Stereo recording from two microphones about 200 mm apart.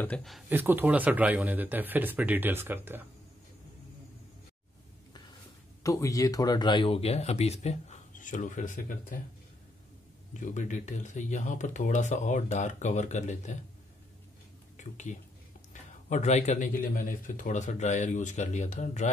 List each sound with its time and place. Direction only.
0.0 s speech: 5° left (ahead or behind)
0.5 s speech: 10° right (ahead or behind)
5.9 s speech: 15° left (ahead or behind); by 9.2 s 40° left (ahead or behind)
10.3 s speech: 40° left (ahead or behind)
14.8 s speech: 40° left (ahead or behind)